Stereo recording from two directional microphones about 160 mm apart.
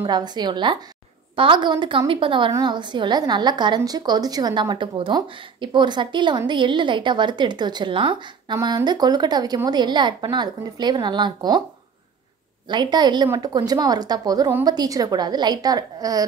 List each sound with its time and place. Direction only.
0.0 s a woman's voice: 25° right (ahead or behind)
12.6 s a woman's voice: 25° right (ahead or behind)